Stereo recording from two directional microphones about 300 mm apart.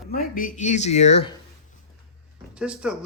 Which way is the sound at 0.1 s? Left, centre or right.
Left.